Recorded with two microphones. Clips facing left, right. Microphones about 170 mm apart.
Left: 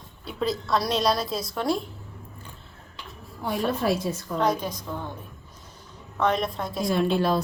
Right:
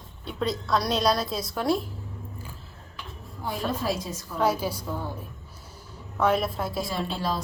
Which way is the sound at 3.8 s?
60° left (ahead or behind).